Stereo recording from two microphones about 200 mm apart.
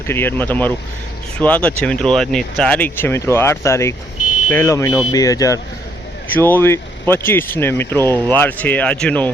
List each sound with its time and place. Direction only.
0.1 s speech: 10° left (ahead or behind)